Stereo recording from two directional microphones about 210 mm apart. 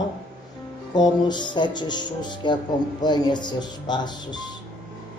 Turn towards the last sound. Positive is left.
turn(degrees=20)  # may be behind; listen again after turning